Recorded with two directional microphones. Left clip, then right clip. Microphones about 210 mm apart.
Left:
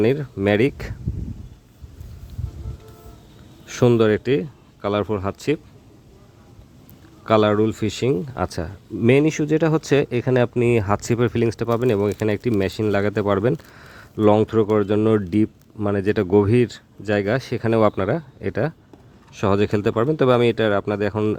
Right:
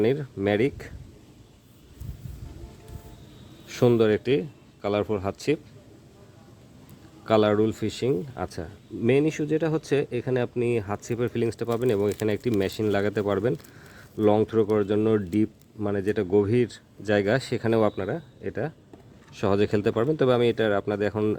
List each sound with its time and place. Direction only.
0.0 s speech: 15° left (ahead or behind)
3.7 s speech: 15° left (ahead or behind)
7.3 s speech: 10° left (ahead or behind)